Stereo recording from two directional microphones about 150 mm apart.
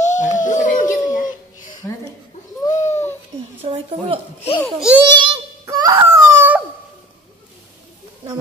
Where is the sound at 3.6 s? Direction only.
40° right (ahead or behind).